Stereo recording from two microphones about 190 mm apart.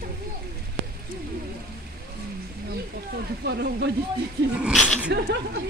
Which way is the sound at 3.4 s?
60° right (ahead or behind).